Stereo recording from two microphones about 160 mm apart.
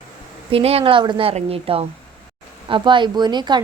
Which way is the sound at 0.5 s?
40° right (ahead or behind).